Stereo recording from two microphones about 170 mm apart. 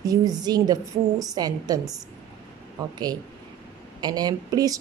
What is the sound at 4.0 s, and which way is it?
Speech, 25° right (ahead or behind).